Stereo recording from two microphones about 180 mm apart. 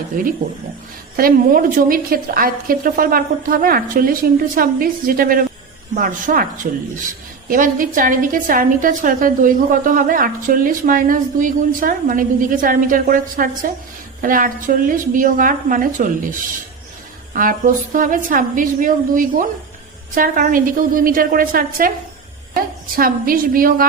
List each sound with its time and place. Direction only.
1.1 s a woman's voice: 50° right (ahead or behind)